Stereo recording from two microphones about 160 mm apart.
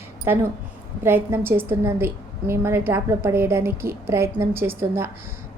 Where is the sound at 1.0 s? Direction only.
15° right (ahead or behind).